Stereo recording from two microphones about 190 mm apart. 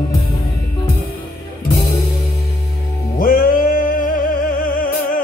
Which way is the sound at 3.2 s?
50° left (ahead or behind).